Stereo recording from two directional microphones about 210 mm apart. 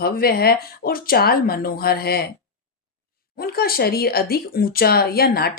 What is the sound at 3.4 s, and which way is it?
Speech, 45° left (ahead or behind).